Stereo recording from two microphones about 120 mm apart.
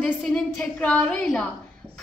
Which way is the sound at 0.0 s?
5° left (ahead or behind).